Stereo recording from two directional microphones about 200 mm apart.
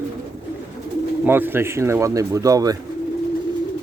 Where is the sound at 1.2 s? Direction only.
10° right (ahead or behind).